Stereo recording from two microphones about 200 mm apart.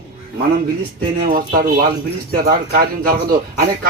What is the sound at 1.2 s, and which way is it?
Speech, 50° right (ahead or behind).